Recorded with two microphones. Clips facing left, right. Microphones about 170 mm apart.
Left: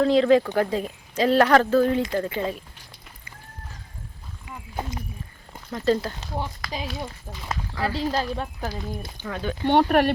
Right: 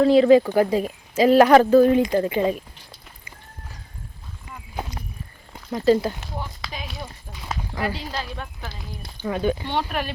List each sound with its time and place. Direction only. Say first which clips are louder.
0.0 s speech: right 4 dB; 5° right (ahead or behind)
5.8 s speech: right 4 dB; 10° right (ahead or behind)
7.9 s speech: left 6 dB; 40° left (ahead or behind)
9.2 s speech: right 8 dB; 15° right (ahead or behind)
9.6 s speech: left 8 dB; 60° left (ahead or behind)